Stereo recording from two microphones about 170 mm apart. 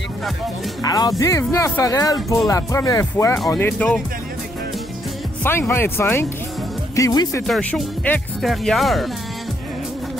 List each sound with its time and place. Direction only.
0.8 s speech: 25° left (ahead or behind); by 4.0 s 5° left (ahead or behind)
5.4 s speech: 15° left (ahead or behind)
7.4 s speech: centre (ahead or behind)